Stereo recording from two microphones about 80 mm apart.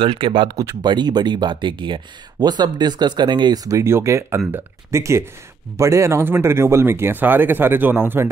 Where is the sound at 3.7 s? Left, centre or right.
Right.